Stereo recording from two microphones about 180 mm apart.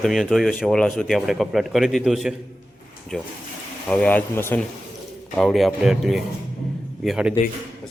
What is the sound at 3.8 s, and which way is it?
A man's voice, 5° left (ahead or behind).